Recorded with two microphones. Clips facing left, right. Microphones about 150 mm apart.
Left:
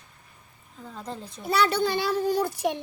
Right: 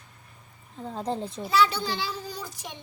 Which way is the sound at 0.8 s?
30° right (ahead or behind).